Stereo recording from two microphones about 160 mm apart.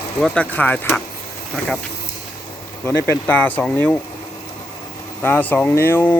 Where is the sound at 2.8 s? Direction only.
15° left (ahead or behind).